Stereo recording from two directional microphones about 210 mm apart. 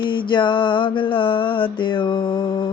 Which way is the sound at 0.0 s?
20° left (ahead or behind).